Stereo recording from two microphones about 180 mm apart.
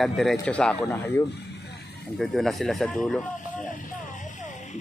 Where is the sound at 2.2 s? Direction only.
Centre (ahead or behind).